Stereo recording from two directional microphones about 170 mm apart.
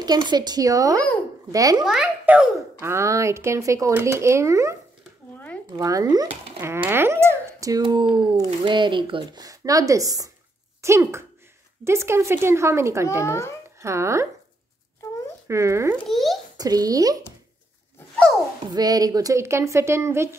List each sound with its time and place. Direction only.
0.0 s speech: 25° right (ahead or behind)
1.8 s a child's voice: centre (ahead or behind)
2.8 s speech: 15° right (ahead or behind)
5.8 s speech: 20° right (ahead or behind)
13.2 s a child's voice: 15° left (ahead or behind)
13.7 s speech: 15° right (ahead or behind)
15.4 s speech: 15° right (ahead or behind)
16.1 s a child's voice: centre (ahead or behind)
16.5 s speech: 20° right (ahead or behind)
18.7 s speech: 25° right (ahead or behind)